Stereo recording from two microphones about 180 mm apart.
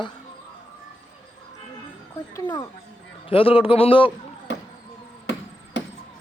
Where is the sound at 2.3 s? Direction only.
20° left (ahead or behind).